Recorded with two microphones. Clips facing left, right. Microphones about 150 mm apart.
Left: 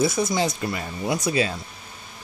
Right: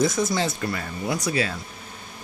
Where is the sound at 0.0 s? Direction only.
10° left (ahead or behind).